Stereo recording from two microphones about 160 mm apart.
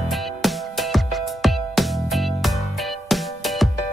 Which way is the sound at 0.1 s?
Centre (ahead or behind).